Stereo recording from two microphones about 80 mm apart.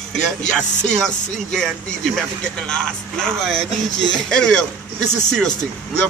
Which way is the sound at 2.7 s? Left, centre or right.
Centre.